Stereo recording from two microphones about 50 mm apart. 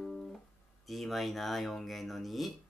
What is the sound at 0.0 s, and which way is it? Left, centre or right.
Music, centre.